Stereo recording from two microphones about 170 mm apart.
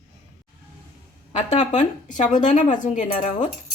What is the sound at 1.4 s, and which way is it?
A woman's voice, 45° left (ahead or behind).